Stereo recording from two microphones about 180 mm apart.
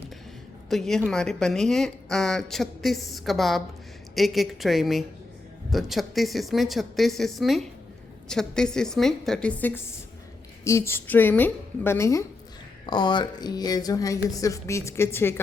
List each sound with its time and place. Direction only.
0.7 s a woman's voice: centre (ahead or behind)